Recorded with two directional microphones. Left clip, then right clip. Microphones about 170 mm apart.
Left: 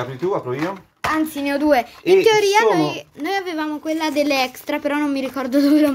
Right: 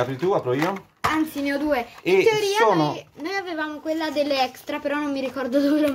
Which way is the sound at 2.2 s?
65° left (ahead or behind).